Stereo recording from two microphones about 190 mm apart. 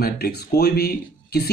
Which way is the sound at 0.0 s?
55° left (ahead or behind).